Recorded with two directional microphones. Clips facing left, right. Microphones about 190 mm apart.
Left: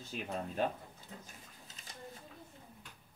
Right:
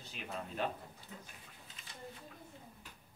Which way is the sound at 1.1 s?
40° left (ahead or behind).